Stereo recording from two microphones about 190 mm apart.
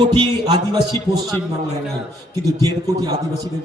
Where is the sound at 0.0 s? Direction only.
25° right (ahead or behind).